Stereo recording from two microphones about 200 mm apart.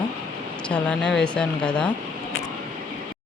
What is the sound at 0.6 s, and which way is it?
Speech, 5° left (ahead or behind).